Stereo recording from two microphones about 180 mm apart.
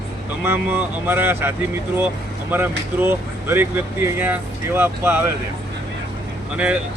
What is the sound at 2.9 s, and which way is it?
Speech, 10° right (ahead or behind).